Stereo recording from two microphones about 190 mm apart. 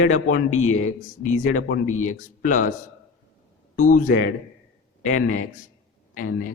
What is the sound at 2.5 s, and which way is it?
Speech, 45° left (ahead or behind).